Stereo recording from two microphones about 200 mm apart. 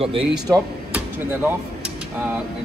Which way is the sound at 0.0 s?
30° right (ahead or behind).